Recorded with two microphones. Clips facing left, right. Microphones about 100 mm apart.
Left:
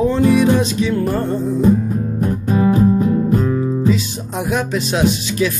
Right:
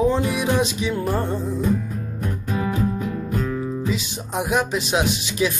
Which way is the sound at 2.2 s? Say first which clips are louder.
Left 9 dB; 35° left (ahead or behind).